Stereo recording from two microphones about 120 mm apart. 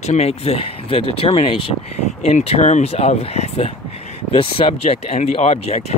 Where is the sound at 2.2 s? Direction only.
65° left (ahead or behind).